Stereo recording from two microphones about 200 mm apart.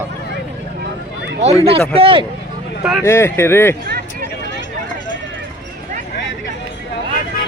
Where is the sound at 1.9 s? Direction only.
25° right (ahead or behind).